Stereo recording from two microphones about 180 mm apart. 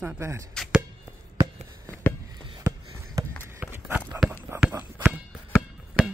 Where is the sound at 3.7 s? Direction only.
10° right (ahead or behind).